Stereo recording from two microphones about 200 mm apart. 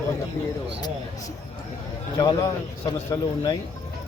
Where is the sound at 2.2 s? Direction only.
20° left (ahead or behind).